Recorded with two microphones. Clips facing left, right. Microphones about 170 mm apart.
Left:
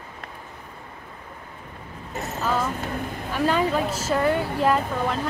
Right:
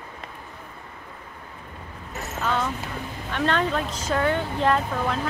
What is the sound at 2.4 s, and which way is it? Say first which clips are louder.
Speech: left 1 dB; 5° left (ahead or behind).